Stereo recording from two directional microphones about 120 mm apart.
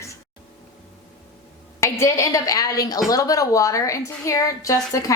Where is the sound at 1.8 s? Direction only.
25° left (ahead or behind).